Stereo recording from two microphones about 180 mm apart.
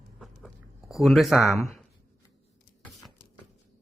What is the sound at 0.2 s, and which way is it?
Writing, centre (ahead or behind).